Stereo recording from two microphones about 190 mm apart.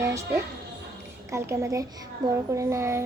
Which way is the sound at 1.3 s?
15° right (ahead or behind).